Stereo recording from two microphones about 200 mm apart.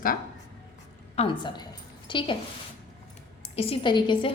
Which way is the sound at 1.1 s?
25° left (ahead or behind).